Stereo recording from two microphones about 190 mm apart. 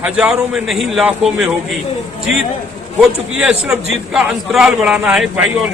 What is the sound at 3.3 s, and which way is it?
A man's voice, 5° right (ahead or behind).